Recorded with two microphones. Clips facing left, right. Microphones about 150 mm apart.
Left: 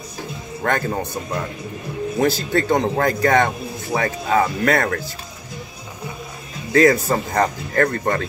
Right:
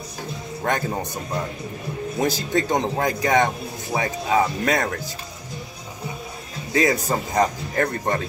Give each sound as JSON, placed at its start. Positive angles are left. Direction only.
{"t": 0.7, "sound": "a man's voice", "side_deg": -15}
{"t": 2.1, "sound": "a man's voice", "side_deg": -15}
{"t": 6.7, "sound": "a man's voice", "side_deg": -15}